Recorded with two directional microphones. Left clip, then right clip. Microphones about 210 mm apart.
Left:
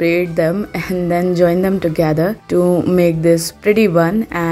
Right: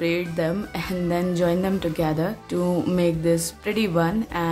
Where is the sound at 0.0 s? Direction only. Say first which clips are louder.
Left 9 dB; 25° left (ahead or behind).